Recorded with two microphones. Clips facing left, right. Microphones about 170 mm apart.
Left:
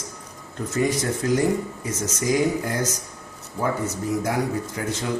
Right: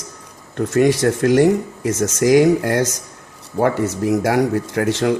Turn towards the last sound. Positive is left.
turn(degrees=-75)  # may be behind; listen again after turning